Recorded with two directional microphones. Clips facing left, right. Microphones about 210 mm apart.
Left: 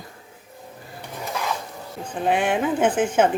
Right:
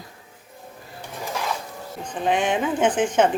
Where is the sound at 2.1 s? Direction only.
5° left (ahead or behind).